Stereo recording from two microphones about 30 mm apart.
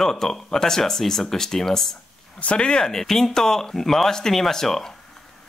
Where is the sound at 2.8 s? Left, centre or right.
Centre.